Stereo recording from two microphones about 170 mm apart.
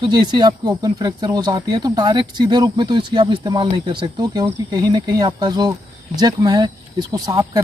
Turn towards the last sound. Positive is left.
turn(degrees=-20)  # may be behind; listen again after turning